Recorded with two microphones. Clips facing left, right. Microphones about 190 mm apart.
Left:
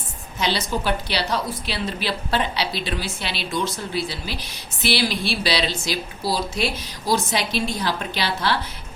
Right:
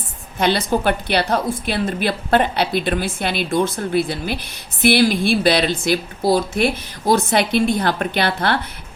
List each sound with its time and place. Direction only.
0.3 s a woman's voice: 55° right (ahead or behind)